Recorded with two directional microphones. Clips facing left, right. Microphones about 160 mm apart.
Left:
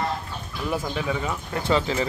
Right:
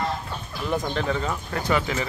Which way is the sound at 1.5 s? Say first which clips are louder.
Left 2 dB; 25° left (ahead or behind).